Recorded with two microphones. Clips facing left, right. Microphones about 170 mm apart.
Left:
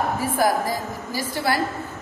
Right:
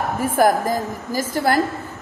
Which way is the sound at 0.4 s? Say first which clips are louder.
Right 6 dB; 50° right (ahead or behind).